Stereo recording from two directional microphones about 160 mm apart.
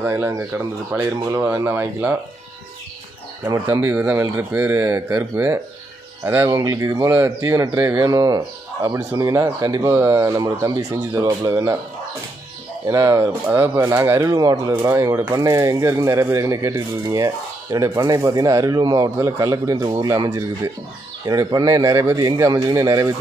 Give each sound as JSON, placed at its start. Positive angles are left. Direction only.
{"t": 0.0, "sound": "speech", "side_deg": -15}
{"t": 3.4, "sound": "speech", "side_deg": -15}
{"t": 12.8, "sound": "speech", "side_deg": -20}